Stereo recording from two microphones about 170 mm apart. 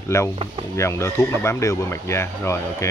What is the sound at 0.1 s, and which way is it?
Speech, 15° left (ahead or behind).